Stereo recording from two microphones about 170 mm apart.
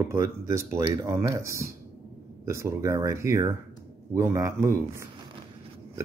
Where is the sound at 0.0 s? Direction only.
15° right (ahead or behind).